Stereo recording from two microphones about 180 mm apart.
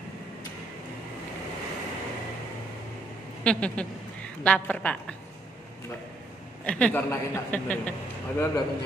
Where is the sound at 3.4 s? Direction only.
5° left (ahead or behind).